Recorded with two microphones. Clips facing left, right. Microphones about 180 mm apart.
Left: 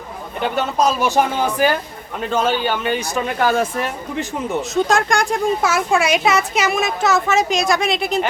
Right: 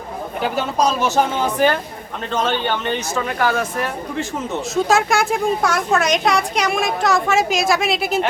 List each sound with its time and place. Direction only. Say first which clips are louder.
0.4 s speech: left 1 dB; centre (ahead or behind)
1.0 s speech: left 1 dB; 10° left (ahead or behind)
3.2 s speech: left 2 dB; 25° left (ahead or behind)
4.7 s speech: right 1 dB; centre (ahead or behind)